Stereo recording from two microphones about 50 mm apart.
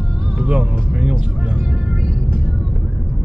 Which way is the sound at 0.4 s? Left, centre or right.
Centre.